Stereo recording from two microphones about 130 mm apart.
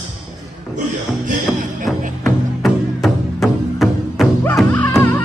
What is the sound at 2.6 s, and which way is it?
Music, centre (ahead or behind).